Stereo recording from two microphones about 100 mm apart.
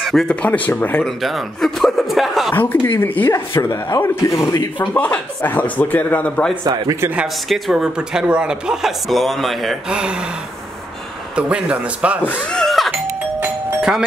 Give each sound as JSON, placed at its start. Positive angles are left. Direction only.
{"t": 0.0, "sound": "speech", "side_deg": 0}
{"t": 0.4, "sound": "speech", "side_deg": 15}
{"t": 1.0, "sound": "a man's voice", "side_deg": 0}
{"t": 2.5, "sound": "speech", "side_deg": 20}
{"t": 4.7, "sound": "speech", "side_deg": 15}
{"t": 6.6, "sound": "a man's voice", "side_deg": -35}
{"t": 7.4, "sound": "speech", "side_deg": 0}
{"t": 11.3, "sound": "a man's voice", "side_deg": -10}
{"t": 12.2, "sound": "speech", "side_deg": 15}
{"t": 12.5, "sound": "doorbell", "side_deg": 0}